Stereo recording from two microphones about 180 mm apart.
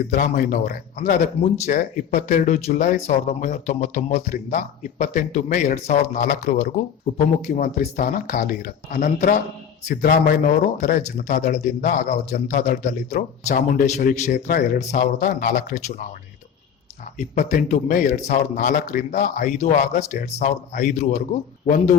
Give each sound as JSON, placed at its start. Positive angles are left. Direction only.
{"t": 0.1, "sound": "speech", "side_deg": 50}
{"t": 17.5, "sound": "a man's voice", "side_deg": 45}